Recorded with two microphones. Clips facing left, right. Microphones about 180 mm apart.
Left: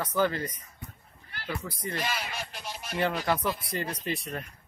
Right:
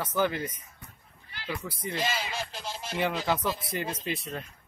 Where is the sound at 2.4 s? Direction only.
30° right (ahead or behind).